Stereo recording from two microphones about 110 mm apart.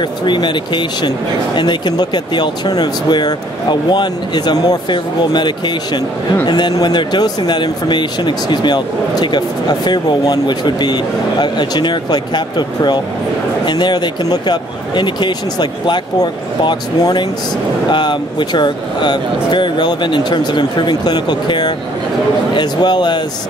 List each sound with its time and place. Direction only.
0.2 s speech: 45° left (ahead or behind)